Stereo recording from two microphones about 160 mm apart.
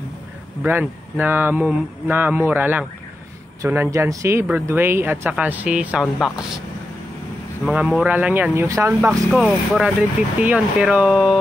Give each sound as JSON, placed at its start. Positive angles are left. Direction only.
{"t": 0.7, "sound": "speech", "side_deg": -10}
{"t": 7.6, "sound": "speech", "side_deg": -5}
{"t": 9.3, "sound": "speech", "side_deg": -5}